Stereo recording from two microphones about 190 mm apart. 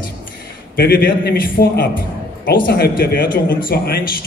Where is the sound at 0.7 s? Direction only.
50° left (ahead or behind).